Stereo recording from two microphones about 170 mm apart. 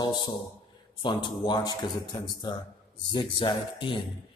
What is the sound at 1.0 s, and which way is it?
A man's voice, 25° left (ahead or behind).